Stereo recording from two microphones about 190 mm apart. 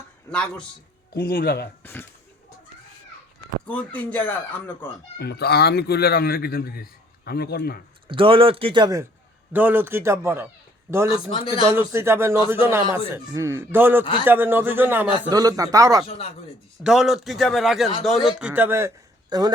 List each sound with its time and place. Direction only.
0.3 s a man's voice: 5° left (ahead or behind)
1.1 s speech: 50° left (ahead or behind)
1.8 s speech: 10° left (ahead or behind)
3.7 s speech: 5° left (ahead or behind)
5.2 s speech: 55° left (ahead or behind)
8.0 s speech: 25° right (ahead or behind)
9.5 s a man's voice: 10° right (ahead or behind)
11.3 s speech: 25° left (ahead or behind)
11.6 s a man's voice: 15° right (ahead or behind)
16.8 s a man's voice: 5° right (ahead or behind); by 19.5 s 20° right (ahead or behind)